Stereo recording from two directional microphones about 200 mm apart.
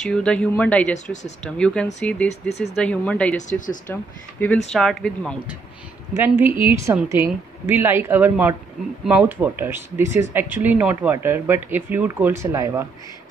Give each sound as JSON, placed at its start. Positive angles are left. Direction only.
{"t": 0.0, "sound": "speech", "side_deg": 5}
{"t": 3.3, "sound": "speech", "side_deg": 40}
{"t": 3.8, "sound": "speech", "side_deg": 10}
{"t": 6.1, "sound": "speech", "side_deg": -10}